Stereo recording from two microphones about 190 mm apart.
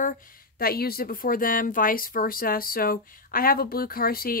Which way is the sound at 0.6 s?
50° left (ahead or behind).